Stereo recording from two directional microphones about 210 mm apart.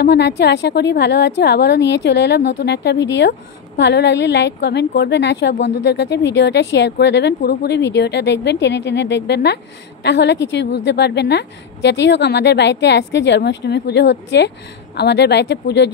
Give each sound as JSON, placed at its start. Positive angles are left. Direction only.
{"t": 0.0, "sound": "a woman's voice", "side_deg": 55}